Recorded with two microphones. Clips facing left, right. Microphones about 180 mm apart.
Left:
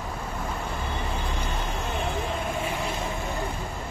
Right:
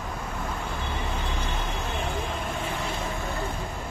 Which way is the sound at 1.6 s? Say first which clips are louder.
Left 1 dB; centre (ahead or behind).